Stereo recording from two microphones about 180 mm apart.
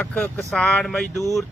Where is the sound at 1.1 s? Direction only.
20° left (ahead or behind).